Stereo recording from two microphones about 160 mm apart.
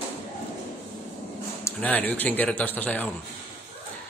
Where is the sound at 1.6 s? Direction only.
10° left (ahead or behind).